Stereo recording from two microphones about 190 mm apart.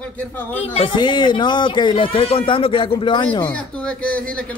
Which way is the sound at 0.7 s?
25° left (ahead or behind).